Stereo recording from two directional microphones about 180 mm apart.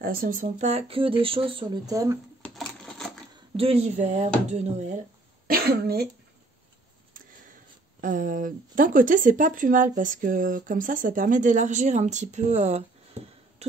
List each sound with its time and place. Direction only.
0.0 s speech: 55° right (ahead or behind); by 2.1 s 20° right (ahead or behind)
2.4 s a sound: centre (ahead or behind)
3.5 s speech: 35° right (ahead or behind)
5.5 s speech: 60° right (ahead or behind)
8.0 s speech: 50° right (ahead or behind)
13.6 s cough: 35° right (ahead or behind)